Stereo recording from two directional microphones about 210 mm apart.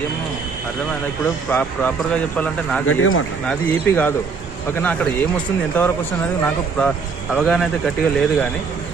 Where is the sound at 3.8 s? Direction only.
10° left (ahead or behind).